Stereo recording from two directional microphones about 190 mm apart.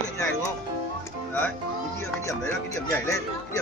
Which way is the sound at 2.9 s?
15° left (ahead or behind).